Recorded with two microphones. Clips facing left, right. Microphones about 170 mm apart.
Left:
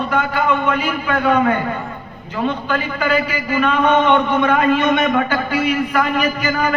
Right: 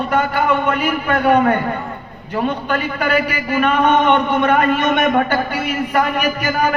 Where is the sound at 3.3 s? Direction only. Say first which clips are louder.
Right 1 dB; 55° right (ahead or behind).